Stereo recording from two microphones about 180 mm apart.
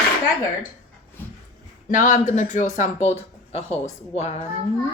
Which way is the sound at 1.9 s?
45° left (ahead or behind).